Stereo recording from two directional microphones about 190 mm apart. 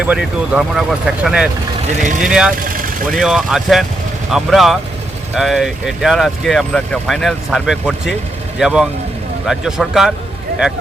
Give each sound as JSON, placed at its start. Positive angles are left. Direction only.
{"t": 0.0, "sound": "speech", "side_deg": -5}
{"t": 2.6, "sound": "speech", "side_deg": -45}
{"t": 3.1, "sound": "speech", "side_deg": 0}